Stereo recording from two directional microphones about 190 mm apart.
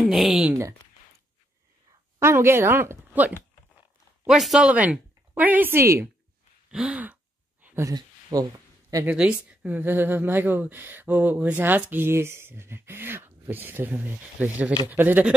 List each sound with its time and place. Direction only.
0.0 s speech: 5° right (ahead or behind)
2.1 s a woman's voice: 15° right (ahead or behind)
6.7 s throat clearing: 5° right (ahead or behind)
7.6 s a sound: 15° right (ahead or behind)
8.9 s a woman's voice: 5° right (ahead or behind)